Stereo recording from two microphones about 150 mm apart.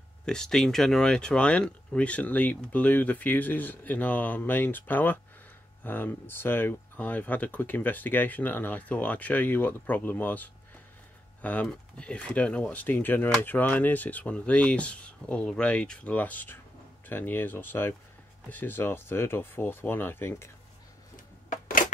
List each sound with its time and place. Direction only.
0.2 s speech: 5° left (ahead or behind)
11.6 s speech: 5° left (ahead or behind)
21.5 s a sound: 60° left (ahead or behind)